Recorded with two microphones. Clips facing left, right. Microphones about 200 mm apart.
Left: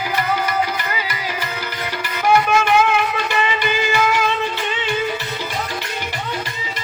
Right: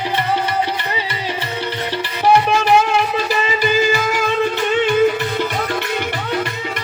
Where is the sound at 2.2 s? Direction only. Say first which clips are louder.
Right 1 dB; 30° right (ahead or behind).